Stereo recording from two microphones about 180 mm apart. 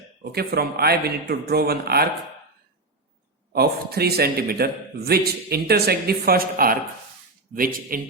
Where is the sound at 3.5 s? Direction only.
60° right (ahead or behind).